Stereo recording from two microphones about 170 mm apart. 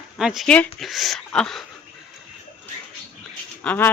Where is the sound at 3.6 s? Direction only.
10° left (ahead or behind).